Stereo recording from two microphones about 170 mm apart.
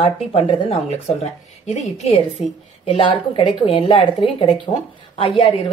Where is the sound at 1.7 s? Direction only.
40° left (ahead or behind).